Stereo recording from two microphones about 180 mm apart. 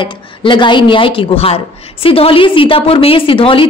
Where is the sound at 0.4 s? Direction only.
25° left (ahead or behind).